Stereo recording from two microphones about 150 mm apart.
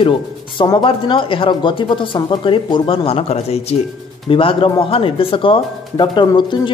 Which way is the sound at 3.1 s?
45° left (ahead or behind).